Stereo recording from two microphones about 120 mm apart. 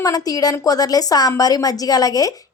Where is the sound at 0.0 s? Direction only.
30° left (ahead or behind).